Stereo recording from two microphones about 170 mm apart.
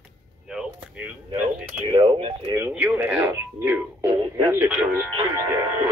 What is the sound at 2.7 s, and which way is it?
Speech, 5° right (ahead or behind).